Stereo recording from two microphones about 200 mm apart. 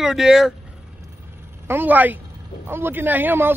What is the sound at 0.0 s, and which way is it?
Speech, centre (ahead or behind).